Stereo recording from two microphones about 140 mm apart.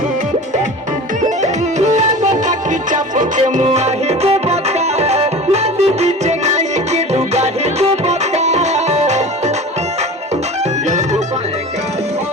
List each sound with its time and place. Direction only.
1.9 s music: 60° right (ahead or behind)
3.7 s music: 50° right (ahead or behind)
10.8 s music: 55° right (ahead or behind)